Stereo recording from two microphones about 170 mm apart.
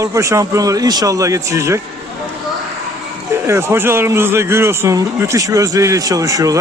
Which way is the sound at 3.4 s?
15° right (ahead or behind).